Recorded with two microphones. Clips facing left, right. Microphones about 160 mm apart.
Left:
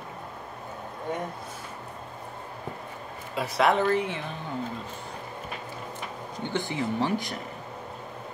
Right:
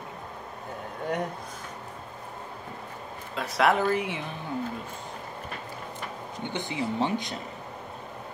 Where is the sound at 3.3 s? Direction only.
Centre (ahead or behind); by 4.2 s 15° right (ahead or behind).